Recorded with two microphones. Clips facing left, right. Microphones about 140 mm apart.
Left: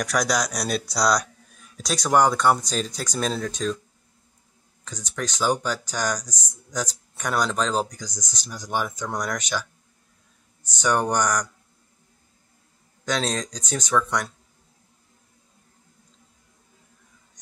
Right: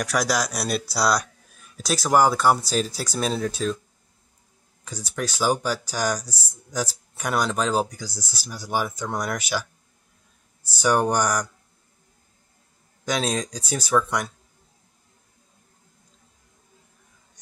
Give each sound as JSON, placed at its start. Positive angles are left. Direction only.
{"t": 0.0, "sound": "speech", "side_deg": 0}
{"t": 4.8, "sound": "speech", "side_deg": -10}
{"t": 13.0, "sound": "speech", "side_deg": -10}